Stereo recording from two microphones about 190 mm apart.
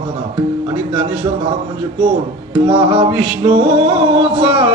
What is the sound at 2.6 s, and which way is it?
Music, 30° right (ahead or behind).